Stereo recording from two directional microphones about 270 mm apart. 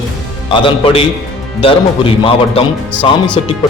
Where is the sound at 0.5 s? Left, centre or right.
Centre.